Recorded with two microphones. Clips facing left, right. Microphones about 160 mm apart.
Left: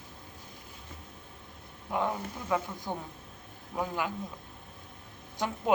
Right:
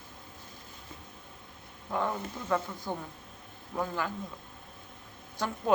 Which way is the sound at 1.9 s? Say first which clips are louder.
Left 1 dB; 15° left (ahead or behind).